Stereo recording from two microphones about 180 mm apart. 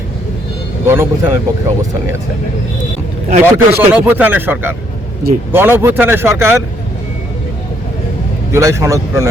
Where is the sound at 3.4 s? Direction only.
10° right (ahead or behind).